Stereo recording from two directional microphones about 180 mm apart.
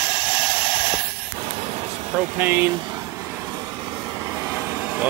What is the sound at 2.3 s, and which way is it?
Speech, 10° right (ahead or behind).